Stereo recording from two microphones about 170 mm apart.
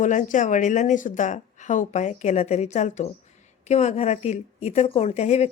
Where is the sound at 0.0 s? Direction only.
45° left (ahead or behind).